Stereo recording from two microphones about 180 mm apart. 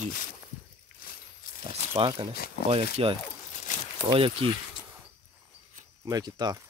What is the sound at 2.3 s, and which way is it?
Speech, 60° left (ahead or behind).